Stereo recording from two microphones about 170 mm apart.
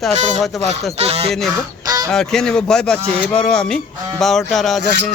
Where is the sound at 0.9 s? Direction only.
40° right (ahead or behind).